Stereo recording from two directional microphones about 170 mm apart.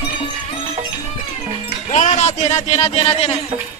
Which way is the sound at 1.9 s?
40° left (ahead or behind).